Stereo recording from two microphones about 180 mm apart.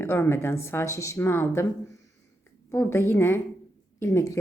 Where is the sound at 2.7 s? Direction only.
15° left (ahead or behind).